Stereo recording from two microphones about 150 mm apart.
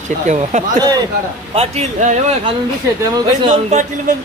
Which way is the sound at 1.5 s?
45° right (ahead or behind).